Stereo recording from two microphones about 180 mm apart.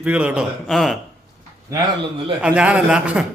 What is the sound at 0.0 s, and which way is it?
Speech, 10° right (ahead or behind).